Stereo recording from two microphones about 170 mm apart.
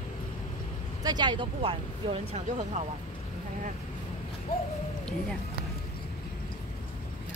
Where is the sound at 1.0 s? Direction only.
25° right (ahead or behind).